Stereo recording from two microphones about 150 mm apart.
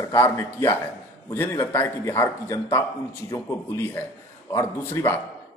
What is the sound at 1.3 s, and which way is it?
A man's voice, 15° left (ahead or behind).